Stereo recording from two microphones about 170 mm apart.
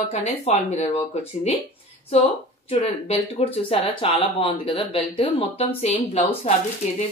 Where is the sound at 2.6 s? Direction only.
35° left (ahead or behind).